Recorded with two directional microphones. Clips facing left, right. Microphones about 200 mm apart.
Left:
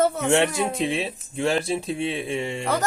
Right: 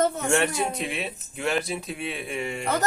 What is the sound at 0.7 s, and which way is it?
Speech, 30° left (ahead or behind).